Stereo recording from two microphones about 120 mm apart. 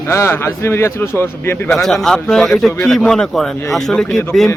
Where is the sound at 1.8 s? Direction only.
5° left (ahead or behind).